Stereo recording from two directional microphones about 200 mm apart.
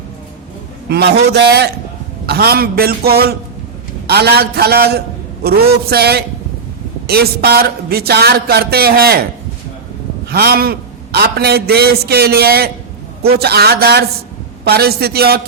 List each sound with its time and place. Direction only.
0.9 s a man's voice: 55° right (ahead or behind)
10.2 s a man's voice: 50° right (ahead or behind)